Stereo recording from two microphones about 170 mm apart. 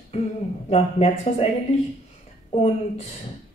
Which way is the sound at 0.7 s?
35° left (ahead or behind).